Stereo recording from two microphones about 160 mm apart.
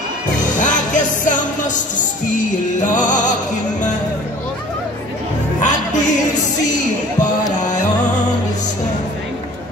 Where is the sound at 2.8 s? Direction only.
50° left (ahead or behind).